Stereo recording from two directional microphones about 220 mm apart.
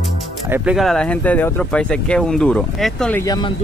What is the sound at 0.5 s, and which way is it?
Speech, 5° right (ahead or behind).